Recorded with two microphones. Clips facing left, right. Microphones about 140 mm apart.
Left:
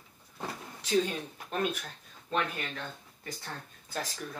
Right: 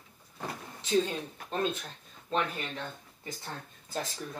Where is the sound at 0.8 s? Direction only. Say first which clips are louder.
Even; 25° right (ahead or behind).